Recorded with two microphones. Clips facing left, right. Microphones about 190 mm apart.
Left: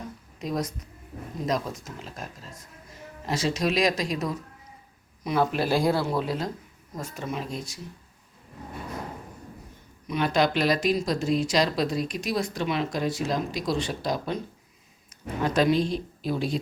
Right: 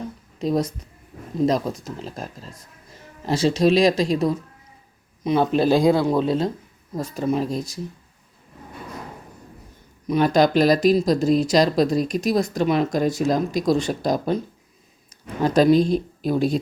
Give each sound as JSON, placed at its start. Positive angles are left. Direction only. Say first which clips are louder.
{"t": 0.3, "sound": "a woman's voice", "louder": "right 8 dB", "side_deg": -30}
{"t": 10.1, "sound": "speech", "louder": "right 6 dB", "side_deg": -40}
{"t": 15.4, "sound": "a woman's voice", "louder": "right 7 dB", "side_deg": -40}